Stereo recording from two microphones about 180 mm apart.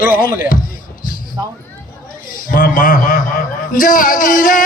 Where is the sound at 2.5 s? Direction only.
50° left (ahead or behind).